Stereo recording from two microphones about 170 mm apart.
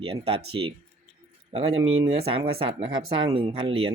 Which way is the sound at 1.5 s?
35° right (ahead or behind).